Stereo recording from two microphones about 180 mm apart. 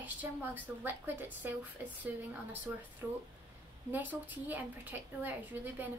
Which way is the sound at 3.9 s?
10° right (ahead or behind).